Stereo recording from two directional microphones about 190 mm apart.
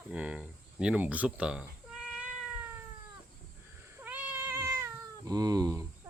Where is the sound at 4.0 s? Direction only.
10° right (ahead or behind).